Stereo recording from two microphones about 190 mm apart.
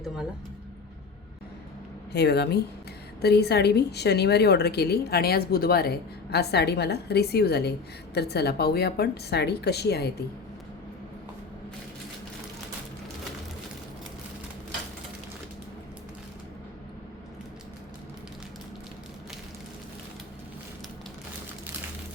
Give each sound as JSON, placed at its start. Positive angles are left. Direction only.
{"t": 2.1, "sound": "a woman's voice", "side_deg": 60}